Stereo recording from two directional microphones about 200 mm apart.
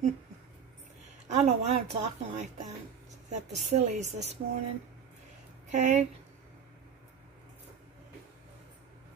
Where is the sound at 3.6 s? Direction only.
35° right (ahead or behind).